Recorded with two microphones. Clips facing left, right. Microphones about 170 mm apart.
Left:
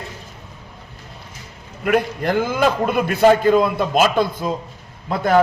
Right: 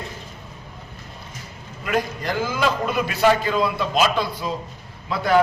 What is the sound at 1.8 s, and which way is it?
A man's voice, 55° left (ahead or behind).